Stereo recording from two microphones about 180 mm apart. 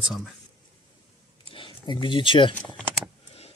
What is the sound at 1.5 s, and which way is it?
Speech, 25° left (ahead or behind).